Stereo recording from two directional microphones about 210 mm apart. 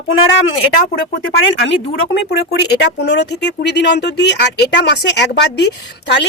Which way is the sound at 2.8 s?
55° left (ahead or behind).